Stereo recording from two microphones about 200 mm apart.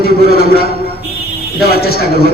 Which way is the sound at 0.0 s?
50° left (ahead or behind).